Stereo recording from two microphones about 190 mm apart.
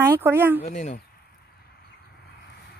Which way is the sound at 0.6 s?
40° left (ahead or behind).